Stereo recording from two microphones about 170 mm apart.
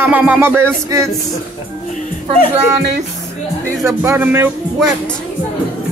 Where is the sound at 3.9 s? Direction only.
10° right (ahead or behind).